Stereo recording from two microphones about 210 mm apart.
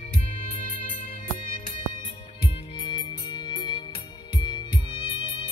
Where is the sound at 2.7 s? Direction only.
25° left (ahead or behind).